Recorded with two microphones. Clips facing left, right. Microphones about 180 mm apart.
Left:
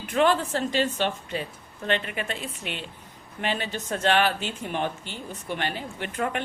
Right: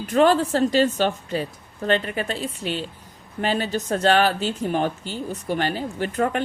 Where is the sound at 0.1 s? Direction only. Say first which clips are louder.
Right 5 dB; 40° right (ahead or behind).